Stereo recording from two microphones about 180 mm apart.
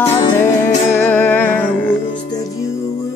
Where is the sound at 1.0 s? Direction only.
10° left (ahead or behind).